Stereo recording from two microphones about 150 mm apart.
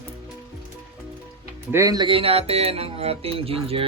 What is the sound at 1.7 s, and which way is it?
Speech, 20° right (ahead or behind).